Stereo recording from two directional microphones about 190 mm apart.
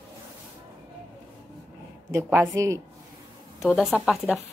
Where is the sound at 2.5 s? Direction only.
15° right (ahead or behind).